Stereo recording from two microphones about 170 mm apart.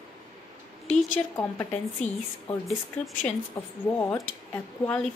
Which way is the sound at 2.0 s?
45° left (ahead or behind).